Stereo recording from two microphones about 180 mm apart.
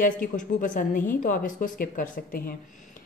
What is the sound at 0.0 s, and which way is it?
A woman's voice, 50° left (ahead or behind).